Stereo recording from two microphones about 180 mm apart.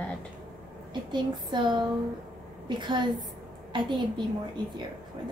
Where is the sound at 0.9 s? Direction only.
25° right (ahead or behind).